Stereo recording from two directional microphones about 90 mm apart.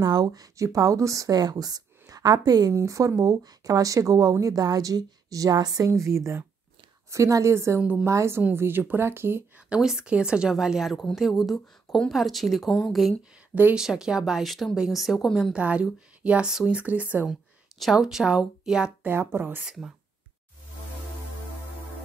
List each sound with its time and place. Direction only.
0.0 s a woman's voice: 45° right (ahead or behind)
2.7 s speech: 35° right (ahead or behind)
5.9 s speech: 35° right (ahead or behind)
9.7 s speech: 5° right (ahead or behind)
15.5 s speech: 15° right (ahead or behind)
17.3 s speech: centre (ahead or behind)
19.0 s speech: 25° right (ahead or behind)
19.6 s speech: 5° right (ahead or behind)